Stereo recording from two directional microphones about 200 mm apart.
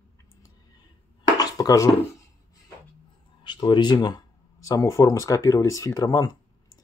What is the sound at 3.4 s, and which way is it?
Speech, 20° left (ahead or behind).